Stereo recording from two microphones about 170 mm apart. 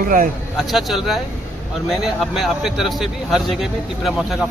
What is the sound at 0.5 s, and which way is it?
Speech, centre (ahead or behind).